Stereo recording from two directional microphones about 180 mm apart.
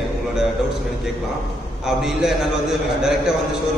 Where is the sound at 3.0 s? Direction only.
5° right (ahead or behind).